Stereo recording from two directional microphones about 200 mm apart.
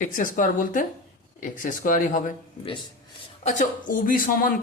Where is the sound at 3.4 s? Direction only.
40° left (ahead or behind).